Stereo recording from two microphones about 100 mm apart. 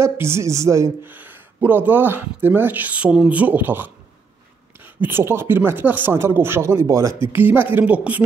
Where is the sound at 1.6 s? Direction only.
20° right (ahead or behind).